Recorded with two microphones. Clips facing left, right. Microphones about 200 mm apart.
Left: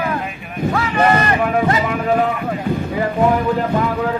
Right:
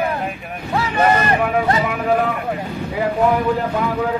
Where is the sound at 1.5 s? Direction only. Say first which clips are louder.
Left 1 dB; 5° right (ahead or behind).